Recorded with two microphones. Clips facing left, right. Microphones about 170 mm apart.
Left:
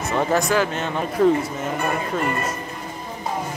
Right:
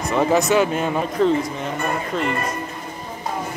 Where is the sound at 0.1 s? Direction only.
Centre (ahead or behind).